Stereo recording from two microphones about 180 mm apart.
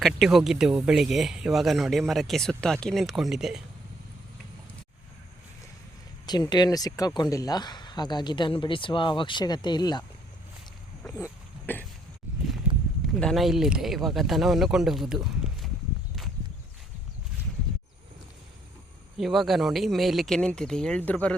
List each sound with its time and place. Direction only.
0.0 s speech: centre (ahead or behind)
6.2 s speech: 25° left (ahead or behind)
11.0 s a sound: 15° left (ahead or behind)
13.1 s speech: centre (ahead or behind)
19.1 s speech: centre (ahead or behind)